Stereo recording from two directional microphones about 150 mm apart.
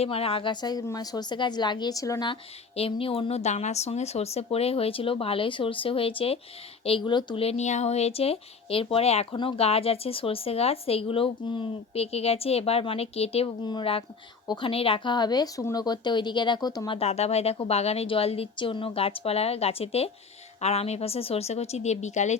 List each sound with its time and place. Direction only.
0.0 s speech: 40° left (ahead or behind)
17.0 s speech: 45° left (ahead or behind)